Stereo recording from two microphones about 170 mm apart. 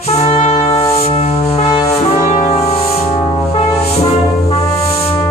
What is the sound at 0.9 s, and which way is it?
Music, 35° left (ahead or behind).